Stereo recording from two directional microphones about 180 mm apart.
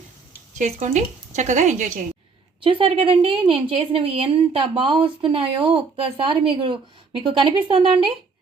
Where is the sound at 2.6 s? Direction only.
30° right (ahead or behind).